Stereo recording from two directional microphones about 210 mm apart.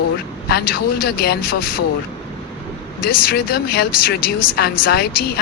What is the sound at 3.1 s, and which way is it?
Speech, 45° left (ahead or behind).